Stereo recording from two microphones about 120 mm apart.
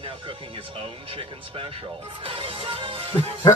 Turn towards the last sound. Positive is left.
turn(degrees=-50)  # may be behind; listen again after turning